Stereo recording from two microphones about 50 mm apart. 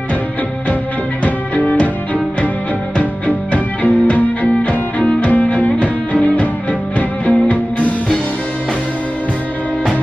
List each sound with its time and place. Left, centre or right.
1.2 s music: left
3.0 s music: left